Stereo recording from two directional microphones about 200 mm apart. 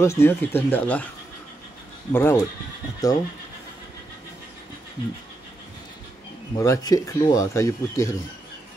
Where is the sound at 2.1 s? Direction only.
10° left (ahead or behind).